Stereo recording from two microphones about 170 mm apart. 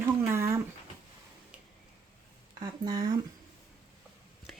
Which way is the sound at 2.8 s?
25° right (ahead or behind).